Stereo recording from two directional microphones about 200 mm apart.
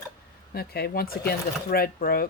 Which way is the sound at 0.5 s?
50° left (ahead or behind).